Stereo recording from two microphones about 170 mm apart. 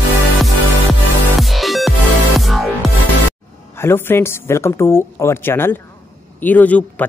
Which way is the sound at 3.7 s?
15° left (ahead or behind).